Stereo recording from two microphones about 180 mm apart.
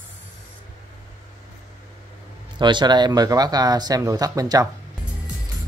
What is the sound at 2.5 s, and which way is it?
Speech, 25° right (ahead or behind).